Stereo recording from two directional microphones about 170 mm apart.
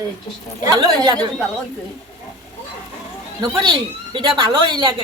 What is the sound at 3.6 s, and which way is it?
Speech, 30° right (ahead or behind).